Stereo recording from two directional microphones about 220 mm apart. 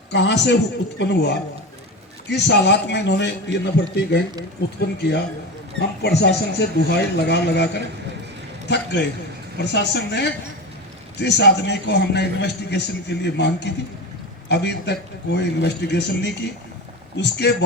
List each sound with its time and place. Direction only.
0.1 s a man's voice: 50° left (ahead or behind)
6.0 s a man's voice: 50° left (ahead or behind)